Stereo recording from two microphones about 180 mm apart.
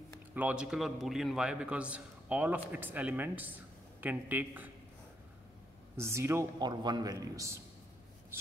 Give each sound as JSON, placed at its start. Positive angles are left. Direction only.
{"t": 0.3, "sound": "a man's voice", "side_deg": -10}
{"t": 5.9, "sound": "a man's voice", "side_deg": -15}